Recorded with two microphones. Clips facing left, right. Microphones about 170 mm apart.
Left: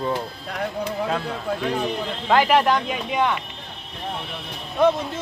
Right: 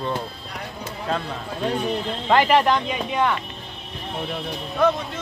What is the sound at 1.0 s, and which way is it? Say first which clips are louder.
Speech: left 2 dB; 5° left (ahead or behind).